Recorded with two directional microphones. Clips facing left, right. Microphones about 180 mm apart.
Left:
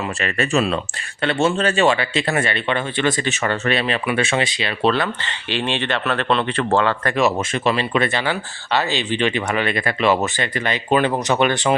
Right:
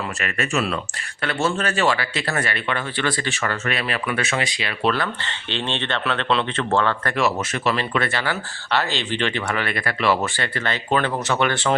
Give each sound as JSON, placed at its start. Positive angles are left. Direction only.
{"t": 0.2, "sound": "speech", "side_deg": 30}
{"t": 5.5, "sound": "speech", "side_deg": 10}